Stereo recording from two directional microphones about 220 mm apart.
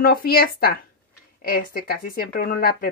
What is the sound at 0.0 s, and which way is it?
Speech, 40° left (ahead or behind).